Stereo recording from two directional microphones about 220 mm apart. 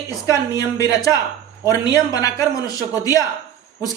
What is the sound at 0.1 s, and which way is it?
A man's voice, 15° left (ahead or behind).